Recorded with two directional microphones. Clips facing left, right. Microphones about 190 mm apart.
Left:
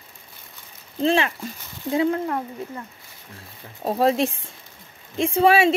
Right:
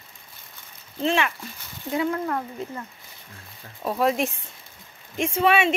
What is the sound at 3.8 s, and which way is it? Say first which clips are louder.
Speech: left 3 dB; 40° left (ahead or behind).